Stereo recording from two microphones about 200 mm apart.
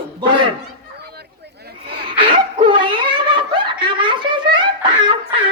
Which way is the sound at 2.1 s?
30° right (ahead or behind).